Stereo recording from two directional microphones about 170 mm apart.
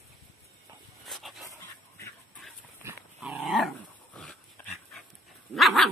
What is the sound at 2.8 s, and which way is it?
Dog, 5° right (ahead or behind).